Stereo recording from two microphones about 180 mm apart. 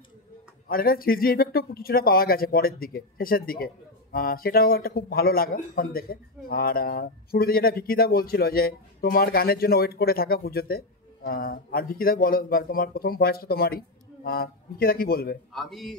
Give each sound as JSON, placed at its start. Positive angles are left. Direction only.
{"t": 0.7, "sound": "speech", "side_deg": 55}
{"t": 15.5, "sound": "speech", "side_deg": 0}